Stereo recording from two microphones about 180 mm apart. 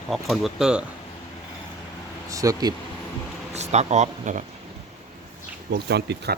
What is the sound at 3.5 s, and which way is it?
Speech, 40° right (ahead or behind).